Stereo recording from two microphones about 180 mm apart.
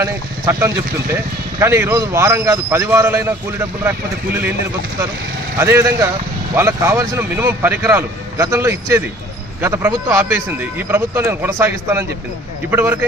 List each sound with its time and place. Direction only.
0.0 s a man's voice: 15° right (ahead or behind)
5.5 s a man's voice: 15° right (ahead or behind)